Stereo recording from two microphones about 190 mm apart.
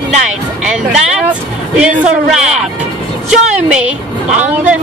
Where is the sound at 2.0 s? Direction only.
Centre (ahead or behind).